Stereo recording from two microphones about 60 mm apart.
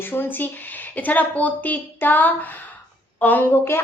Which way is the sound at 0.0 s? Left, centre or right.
Left.